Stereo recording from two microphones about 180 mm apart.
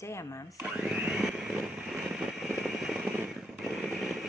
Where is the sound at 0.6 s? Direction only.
5° right (ahead or behind).